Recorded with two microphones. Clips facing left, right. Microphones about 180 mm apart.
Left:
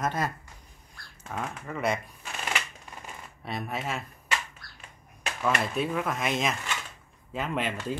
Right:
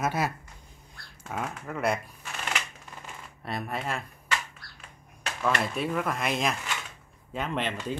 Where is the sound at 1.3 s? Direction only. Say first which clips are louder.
Right 1 dB; 5° right (ahead or behind).